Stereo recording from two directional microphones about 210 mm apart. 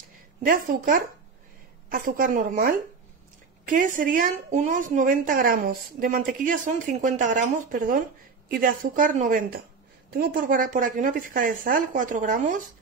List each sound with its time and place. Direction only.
0.5 s a woman's voice: 40° right (ahead or behind)